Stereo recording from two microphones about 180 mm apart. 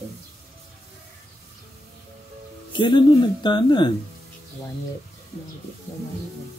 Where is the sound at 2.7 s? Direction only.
25° left (ahead or behind).